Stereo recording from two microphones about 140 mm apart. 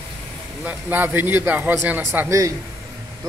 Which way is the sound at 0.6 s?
15° right (ahead or behind).